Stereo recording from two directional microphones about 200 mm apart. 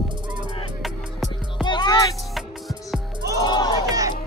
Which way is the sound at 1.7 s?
20° left (ahead or behind).